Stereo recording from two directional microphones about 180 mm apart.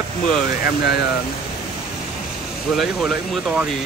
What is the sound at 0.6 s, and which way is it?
Speech, 60° left (ahead or behind).